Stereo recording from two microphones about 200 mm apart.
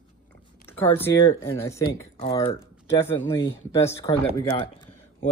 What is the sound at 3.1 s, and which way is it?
Speech, 15° left (ahead or behind).